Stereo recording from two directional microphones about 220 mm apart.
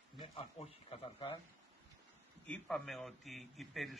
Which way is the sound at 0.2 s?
25° left (ahead or behind).